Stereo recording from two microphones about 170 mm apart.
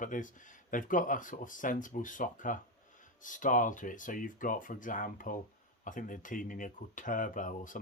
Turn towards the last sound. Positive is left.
turn(degrees=50)  # may be behind; listen again after turning